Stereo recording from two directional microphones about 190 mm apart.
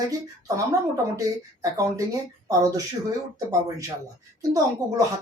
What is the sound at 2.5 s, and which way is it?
Speech, 20° right (ahead or behind).